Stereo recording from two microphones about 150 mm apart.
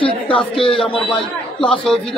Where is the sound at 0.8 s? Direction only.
10° left (ahead or behind).